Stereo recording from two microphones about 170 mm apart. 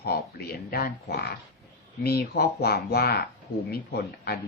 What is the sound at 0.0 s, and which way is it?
Speech, 65° left (ahead or behind).